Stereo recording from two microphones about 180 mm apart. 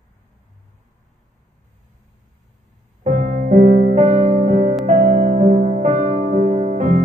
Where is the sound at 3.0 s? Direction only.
40° right (ahead or behind).